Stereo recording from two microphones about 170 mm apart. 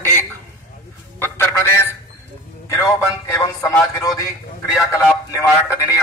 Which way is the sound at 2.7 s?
15° left (ahead or behind).